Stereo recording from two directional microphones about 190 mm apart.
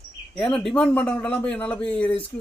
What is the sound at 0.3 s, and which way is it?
A man's voice, 5° left (ahead or behind).